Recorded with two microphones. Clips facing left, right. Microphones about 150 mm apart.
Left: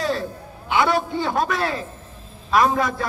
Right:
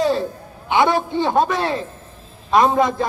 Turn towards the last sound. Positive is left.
turn(degrees=-25)  # may be behind; listen again after turning